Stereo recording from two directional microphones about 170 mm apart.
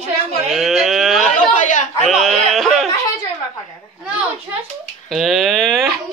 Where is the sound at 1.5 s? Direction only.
45° left (ahead or behind).